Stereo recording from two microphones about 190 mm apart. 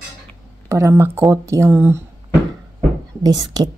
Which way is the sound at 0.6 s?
15° right (ahead or behind).